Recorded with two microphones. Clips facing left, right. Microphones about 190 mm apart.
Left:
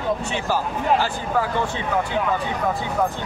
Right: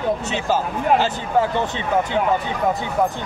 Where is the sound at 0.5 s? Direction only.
20° right (ahead or behind).